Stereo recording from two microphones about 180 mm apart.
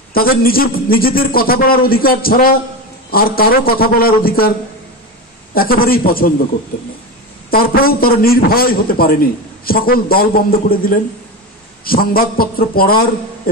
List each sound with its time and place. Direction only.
0.1 s a man's voice: 55° left (ahead or behind)
5.5 s a man's voice: 55° left (ahead or behind)
7.5 s a man's voice: 55° left (ahead or behind)